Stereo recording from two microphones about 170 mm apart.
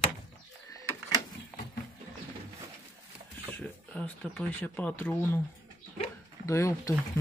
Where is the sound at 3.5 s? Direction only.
5° left (ahead or behind).